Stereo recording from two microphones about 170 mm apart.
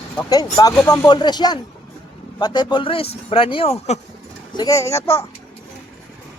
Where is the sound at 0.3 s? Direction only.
20° left (ahead or behind); by 4.0 s 40° left (ahead or behind).